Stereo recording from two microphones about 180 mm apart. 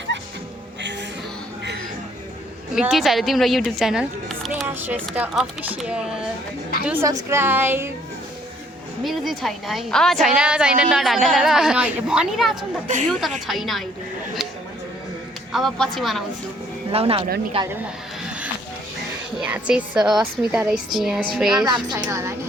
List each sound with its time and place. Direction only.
2.7 s a woman's voice: centre (ahead or behind)
4.6 s a sound: 10° right (ahead or behind)
5.1 s a woman's voice: 5° right (ahead or behind)
9.0 s a woman's voice: centre (ahead or behind)
14.4 s a sound: centre (ahead or behind)
15.5 s a woman's voice: centre (ahead or behind)
16.9 s speech: 30° right (ahead or behind)
19.4 s a woman's voice: 10° right (ahead or behind)
21.8 s a woman's voice: 20° right (ahead or behind)